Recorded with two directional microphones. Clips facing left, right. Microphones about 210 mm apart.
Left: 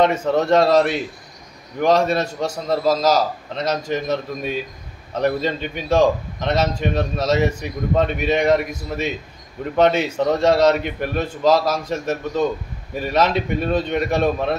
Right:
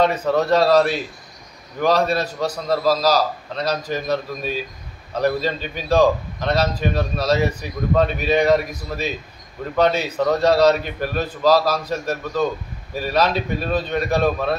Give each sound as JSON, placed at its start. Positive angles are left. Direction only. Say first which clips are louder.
{"t": 0.0, "sound": "a man's voice", "louder": "left 1 dB", "side_deg": 25}